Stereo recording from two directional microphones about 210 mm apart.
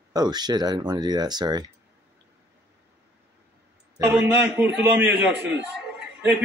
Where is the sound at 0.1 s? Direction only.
20° right (ahead or behind).